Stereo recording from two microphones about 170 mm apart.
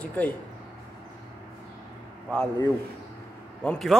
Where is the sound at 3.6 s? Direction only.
5° left (ahead or behind).